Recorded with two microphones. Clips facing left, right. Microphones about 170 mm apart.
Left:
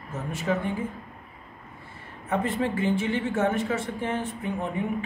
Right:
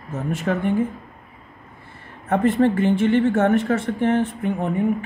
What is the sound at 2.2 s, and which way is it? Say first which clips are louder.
Speech: right 9 dB; 60° right (ahead or behind).